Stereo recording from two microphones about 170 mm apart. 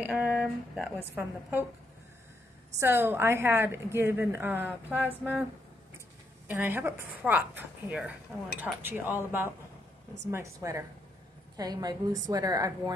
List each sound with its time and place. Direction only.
0.0 s a woman's voice: 10° right (ahead or behind)
2.7 s a woman's voice: 15° right (ahead or behind)